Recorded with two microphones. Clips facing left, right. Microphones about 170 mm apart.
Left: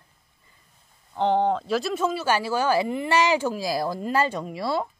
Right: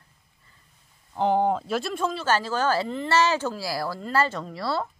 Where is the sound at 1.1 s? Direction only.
5° right (ahead or behind).